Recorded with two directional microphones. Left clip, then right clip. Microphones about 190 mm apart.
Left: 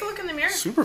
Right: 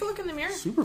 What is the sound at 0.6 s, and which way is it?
Speech, 10° left (ahead or behind).